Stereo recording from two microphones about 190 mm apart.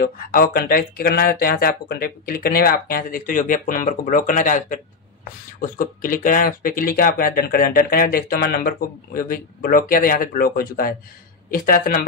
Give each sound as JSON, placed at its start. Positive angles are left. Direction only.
{"t": 0.0, "sound": "speech", "side_deg": 50}